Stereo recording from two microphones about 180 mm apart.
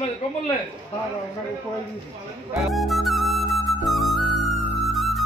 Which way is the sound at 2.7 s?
Centre (ahead or behind).